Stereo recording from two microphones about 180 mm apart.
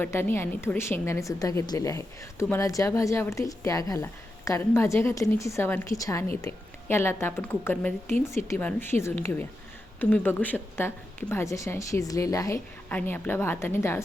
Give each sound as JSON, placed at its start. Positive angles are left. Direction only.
{"t": 0.0, "sound": "a woman's voice", "side_deg": 10}